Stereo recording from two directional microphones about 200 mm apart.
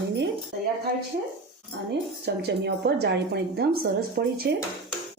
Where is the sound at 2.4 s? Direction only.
55° right (ahead or behind).